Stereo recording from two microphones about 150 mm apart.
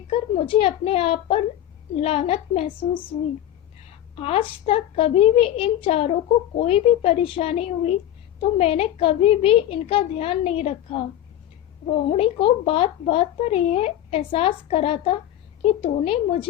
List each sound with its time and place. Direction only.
0.1 s speech: 35° left (ahead or behind)
4.1 s speech: 40° left (ahead or behind)
12.0 s speech: 40° left (ahead or behind)